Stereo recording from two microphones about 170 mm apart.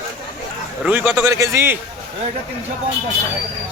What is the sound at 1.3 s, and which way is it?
Speech, 15° right (ahead or behind).